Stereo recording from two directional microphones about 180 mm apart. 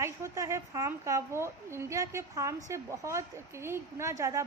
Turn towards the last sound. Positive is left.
turn(degrees=-15)  # may be behind; listen again after turning